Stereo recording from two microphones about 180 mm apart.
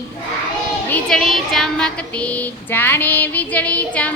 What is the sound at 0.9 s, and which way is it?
Speech, 5° left (ahead or behind).